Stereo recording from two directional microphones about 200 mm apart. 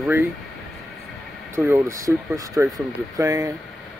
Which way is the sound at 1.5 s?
10° right (ahead or behind).